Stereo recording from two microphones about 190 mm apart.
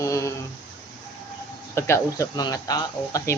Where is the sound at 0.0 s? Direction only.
15° left (ahead or behind).